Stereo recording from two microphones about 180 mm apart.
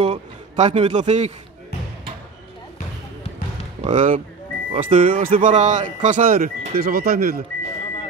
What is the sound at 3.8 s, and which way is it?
Speech, 45° right (ahead or behind).